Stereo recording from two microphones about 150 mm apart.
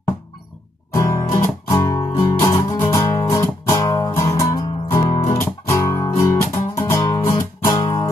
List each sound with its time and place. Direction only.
0.9 s music: 20° left (ahead or behind)